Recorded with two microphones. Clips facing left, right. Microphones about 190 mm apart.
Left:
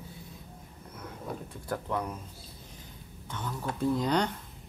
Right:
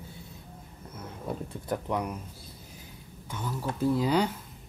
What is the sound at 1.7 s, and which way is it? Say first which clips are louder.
Speech: right 2 dB; 15° right (ahead or behind).